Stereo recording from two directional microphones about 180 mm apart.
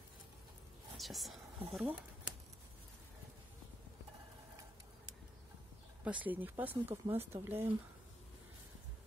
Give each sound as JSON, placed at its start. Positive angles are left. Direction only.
{"t": 0.9, "sound": "speech", "side_deg": 0}
{"t": 6.0, "sound": "speech", "side_deg": -10}